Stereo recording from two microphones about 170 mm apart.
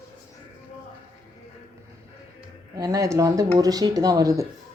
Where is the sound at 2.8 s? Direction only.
20° right (ahead or behind).